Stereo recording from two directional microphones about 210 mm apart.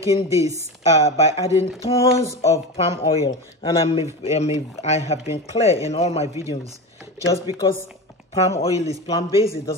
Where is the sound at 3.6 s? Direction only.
25° left (ahead or behind).